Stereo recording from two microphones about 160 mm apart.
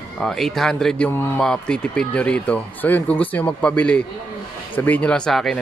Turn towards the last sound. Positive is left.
turn(degrees=5)  # may be behind; listen again after turning